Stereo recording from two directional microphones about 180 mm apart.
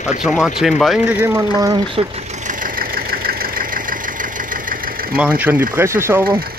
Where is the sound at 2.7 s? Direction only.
55° right (ahead or behind).